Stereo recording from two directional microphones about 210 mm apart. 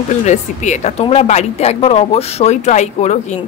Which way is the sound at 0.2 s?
35° left (ahead or behind).